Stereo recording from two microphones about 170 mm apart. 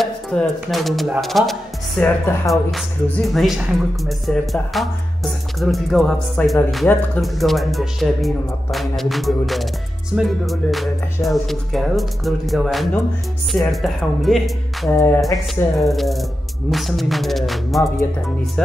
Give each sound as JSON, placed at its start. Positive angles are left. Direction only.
{"t": 0.0, "sound": "speech", "side_deg": 5}
{"t": 14.9, "sound": "music", "side_deg": 15}
{"t": 15.8, "sound": "speech", "side_deg": 0}